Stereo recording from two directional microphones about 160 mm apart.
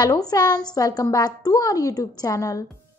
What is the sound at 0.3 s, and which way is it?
A woman's voice, 25° left (ahead or behind).